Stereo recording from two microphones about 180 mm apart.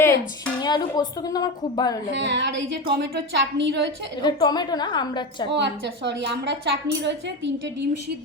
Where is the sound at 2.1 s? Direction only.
85° right.